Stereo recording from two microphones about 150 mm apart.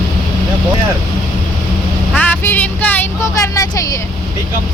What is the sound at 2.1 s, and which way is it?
Vehicle, 10° left (ahead or behind).